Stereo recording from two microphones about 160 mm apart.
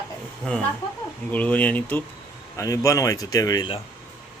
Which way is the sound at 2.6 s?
20° left (ahead or behind).